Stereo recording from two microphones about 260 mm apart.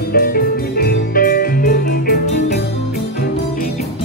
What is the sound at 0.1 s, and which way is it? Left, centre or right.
Music, left.